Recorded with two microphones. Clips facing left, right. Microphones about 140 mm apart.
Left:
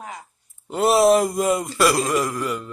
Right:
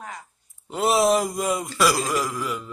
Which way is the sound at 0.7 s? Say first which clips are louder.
Left 4 dB; centre (ahead or behind).